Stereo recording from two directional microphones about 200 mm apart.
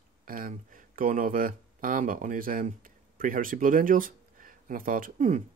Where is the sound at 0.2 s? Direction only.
45° right (ahead or behind).